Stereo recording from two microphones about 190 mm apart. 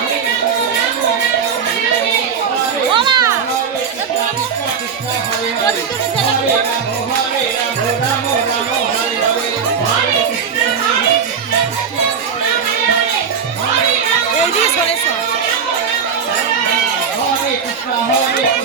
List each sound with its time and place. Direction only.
2.9 s music: 25° right (ahead or behind)